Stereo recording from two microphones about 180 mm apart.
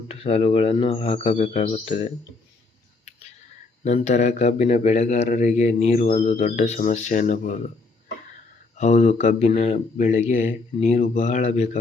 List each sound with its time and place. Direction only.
0.1 s a man's voice: 35° left (ahead or behind)
3.8 s a man's voice: 40° left (ahead or behind)
8.8 s a man's voice: 40° left (ahead or behind)